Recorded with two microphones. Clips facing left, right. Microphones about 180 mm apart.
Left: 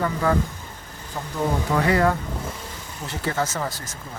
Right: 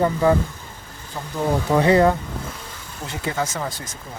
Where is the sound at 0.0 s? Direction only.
20° right (ahead or behind).